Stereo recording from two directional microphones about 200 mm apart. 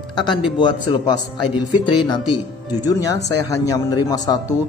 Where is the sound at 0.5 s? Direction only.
20° left (ahead or behind).